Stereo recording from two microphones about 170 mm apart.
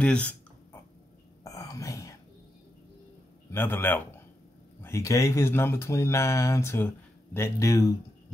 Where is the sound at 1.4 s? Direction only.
20° left (ahead or behind).